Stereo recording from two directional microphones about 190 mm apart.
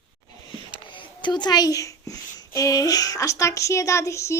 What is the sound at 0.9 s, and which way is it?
A child's voice, 25° left (ahead or behind).